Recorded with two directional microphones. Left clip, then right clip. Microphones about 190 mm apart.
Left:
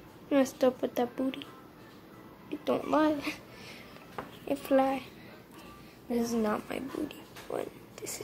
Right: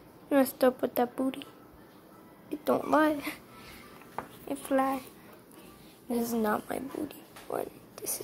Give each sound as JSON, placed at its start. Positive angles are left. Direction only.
{"t": 0.3, "sound": "a woman's voice", "side_deg": -10}
{"t": 2.6, "sound": "a woman's voice", "side_deg": -15}
{"t": 4.5, "sound": "speech", "side_deg": 5}
{"t": 6.0, "sound": "a woman's voice", "side_deg": -30}